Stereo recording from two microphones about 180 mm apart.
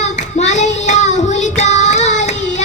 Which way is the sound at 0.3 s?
40° left (ahead or behind).